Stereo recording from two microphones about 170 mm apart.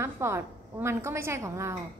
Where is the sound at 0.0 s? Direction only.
15° right (ahead or behind).